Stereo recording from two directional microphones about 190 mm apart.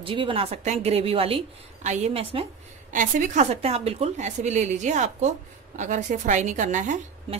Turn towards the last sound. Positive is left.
turn(degrees=-40)  # may be behind; listen again after turning